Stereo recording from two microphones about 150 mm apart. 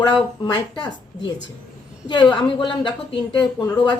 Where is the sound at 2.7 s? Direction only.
35° left (ahead or behind).